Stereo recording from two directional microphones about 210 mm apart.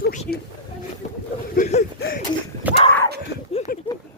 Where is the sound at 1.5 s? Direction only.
35° left (ahead or behind).